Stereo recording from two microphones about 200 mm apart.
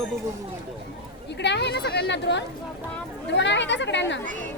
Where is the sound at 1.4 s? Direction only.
60° left (ahead or behind).